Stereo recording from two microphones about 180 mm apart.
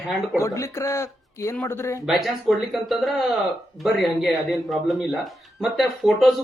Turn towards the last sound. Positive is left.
turn(degrees=0)  # may be behind; listen again after turning